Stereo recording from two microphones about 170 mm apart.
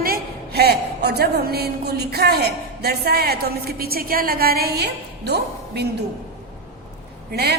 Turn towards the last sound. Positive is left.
turn(degrees=-75)  # may be behind; listen again after turning